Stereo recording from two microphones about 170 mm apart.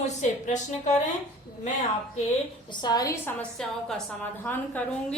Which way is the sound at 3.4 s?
Centre (ahead or behind).